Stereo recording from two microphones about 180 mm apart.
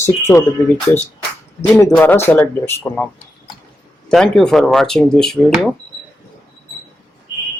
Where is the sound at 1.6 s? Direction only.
15° left (ahead or behind).